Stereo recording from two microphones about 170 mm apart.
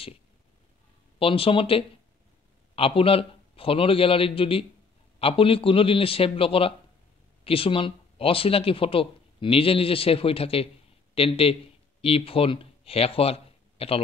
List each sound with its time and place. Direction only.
1.2 s speech: 30° left (ahead or behind)